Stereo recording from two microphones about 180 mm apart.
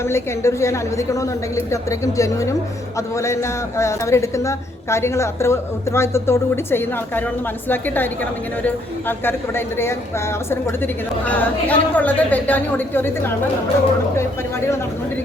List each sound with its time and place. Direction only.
0.0 s a woman's voice: 15° left (ahead or behind)